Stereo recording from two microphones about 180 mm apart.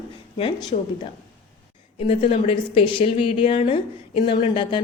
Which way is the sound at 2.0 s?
35° left (ahead or behind).